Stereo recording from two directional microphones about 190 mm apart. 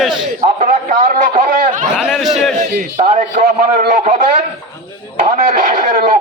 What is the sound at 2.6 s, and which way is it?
A man's voice, 40° right (ahead or behind).